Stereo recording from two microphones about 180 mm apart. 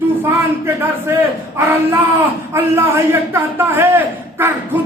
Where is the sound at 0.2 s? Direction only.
15° right (ahead or behind).